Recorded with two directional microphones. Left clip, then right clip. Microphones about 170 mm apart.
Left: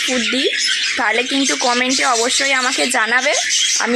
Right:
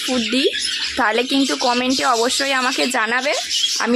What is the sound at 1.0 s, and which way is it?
Speech, 25° right (ahead or behind).